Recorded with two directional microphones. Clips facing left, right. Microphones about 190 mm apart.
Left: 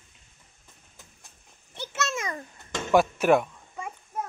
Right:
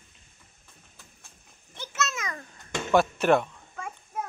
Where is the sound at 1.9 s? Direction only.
30° left (ahead or behind).